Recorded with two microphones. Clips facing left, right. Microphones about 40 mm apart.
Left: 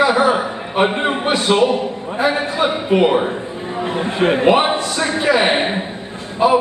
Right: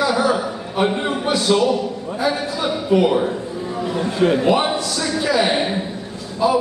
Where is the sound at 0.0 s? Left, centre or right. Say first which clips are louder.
Left 4 dB; left.